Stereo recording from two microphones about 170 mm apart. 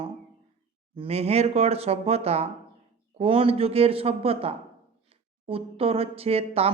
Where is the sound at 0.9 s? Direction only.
35° right (ahead or behind).